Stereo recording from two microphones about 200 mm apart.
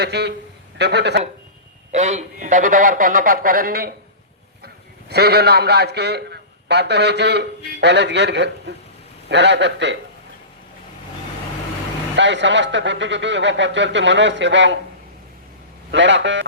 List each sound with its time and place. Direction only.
0.0 s a man's voice: 55° right (ahead or behind)
1.9 s a man's voice: 35° right (ahead or behind); by 10.0 s 60° right (ahead or behind)
12.1 s a man's voice: 60° right (ahead or behind)
15.9 s a man's voice: 65° right (ahead or behind)